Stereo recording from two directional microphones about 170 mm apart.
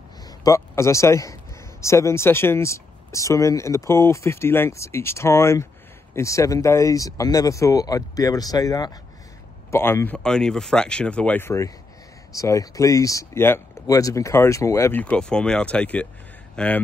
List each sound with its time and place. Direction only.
0.4 s a man's voice: 15° left (ahead or behind)